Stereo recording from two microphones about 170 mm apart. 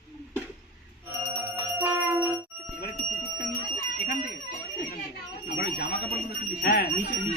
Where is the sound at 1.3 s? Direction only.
10° right (ahead or behind).